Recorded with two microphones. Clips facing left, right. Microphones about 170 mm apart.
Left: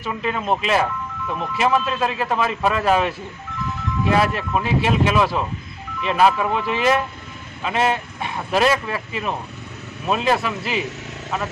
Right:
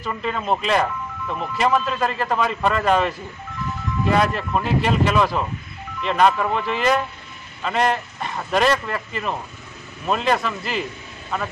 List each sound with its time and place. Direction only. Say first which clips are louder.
0.0 s speech: left 1 dB; 5° left (ahead or behind)